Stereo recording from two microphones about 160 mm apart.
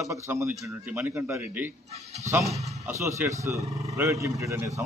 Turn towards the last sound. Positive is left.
turn(degrees=-15)  # may be behind; listen again after turning